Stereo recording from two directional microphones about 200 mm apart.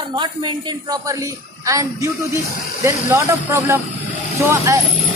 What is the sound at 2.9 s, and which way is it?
Speech, 15° right (ahead or behind).